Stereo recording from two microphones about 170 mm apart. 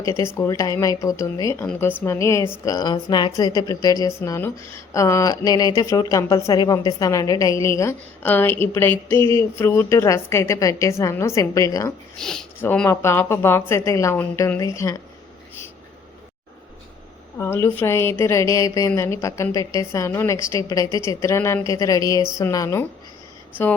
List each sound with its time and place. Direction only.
0.0 s a woman's voice: 15° left (ahead or behind)
12.2 s a woman's voice: 5° left (ahead or behind)
17.3 s a woman's voice: 15° left (ahead or behind)